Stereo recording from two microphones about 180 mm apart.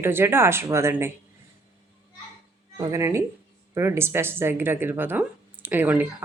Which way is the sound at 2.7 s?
20° right (ahead or behind).